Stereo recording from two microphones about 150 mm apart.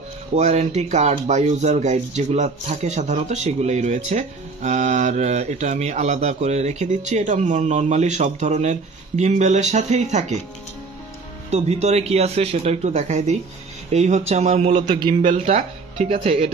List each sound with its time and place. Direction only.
0.3 s speech: 50° right (ahead or behind)
11.5 s speech: 45° right (ahead or behind)
14.9 s a man's voice: 30° right (ahead or behind)
15.3 s speech: 45° right (ahead or behind)